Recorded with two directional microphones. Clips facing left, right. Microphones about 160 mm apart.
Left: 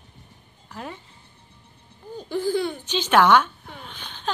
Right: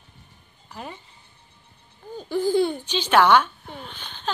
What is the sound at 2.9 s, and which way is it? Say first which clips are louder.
Speech: left 1 dB; 10° left (ahead or behind).